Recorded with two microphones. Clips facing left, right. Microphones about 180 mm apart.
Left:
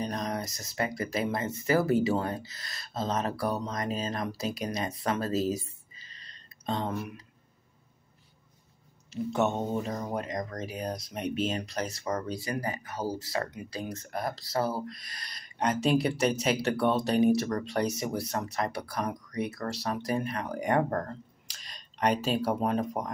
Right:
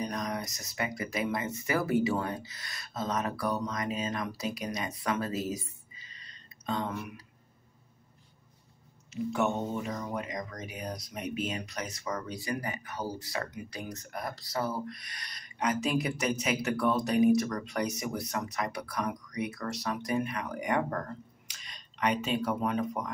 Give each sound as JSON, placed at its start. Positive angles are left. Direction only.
{"t": 0.0, "sound": "a sound", "side_deg": 30}
{"t": 1.1, "sound": "speech", "side_deg": 30}
{"t": 6.6, "sound": "speech", "side_deg": 30}
{"t": 9.1, "sound": "speech", "side_deg": 30}